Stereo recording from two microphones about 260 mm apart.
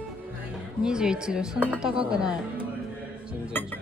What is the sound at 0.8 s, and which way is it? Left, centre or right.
Speech, centre.